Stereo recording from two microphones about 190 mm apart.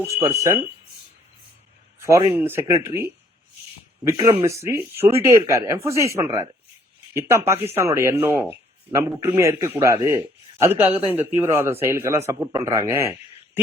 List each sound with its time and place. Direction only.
0.0 s speech: 15° right (ahead or behind)
2.0 s speech: 15° right (ahead or behind)